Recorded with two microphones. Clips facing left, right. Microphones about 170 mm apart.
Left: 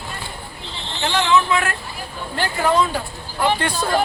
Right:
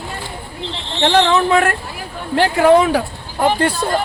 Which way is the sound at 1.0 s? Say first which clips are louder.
Right 5 dB; 40° right (ahead or behind).